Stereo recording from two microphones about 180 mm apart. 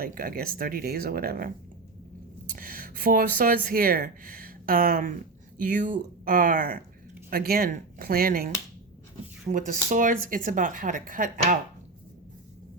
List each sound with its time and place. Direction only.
0.0 s speech: 55° right (ahead or behind)
2.6 s speech: 50° right (ahead or behind)